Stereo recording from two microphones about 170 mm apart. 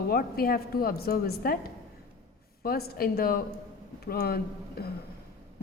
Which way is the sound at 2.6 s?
60° left (ahead or behind).